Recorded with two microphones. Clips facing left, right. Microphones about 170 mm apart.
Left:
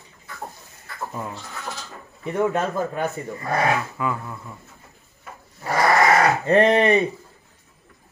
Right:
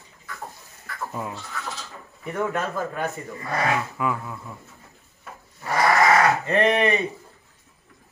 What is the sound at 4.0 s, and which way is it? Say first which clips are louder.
Speech: even; centre (ahead or behind).